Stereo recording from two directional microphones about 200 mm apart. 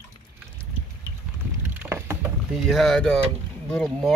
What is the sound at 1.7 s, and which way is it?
Rowboat, 10° right (ahead or behind).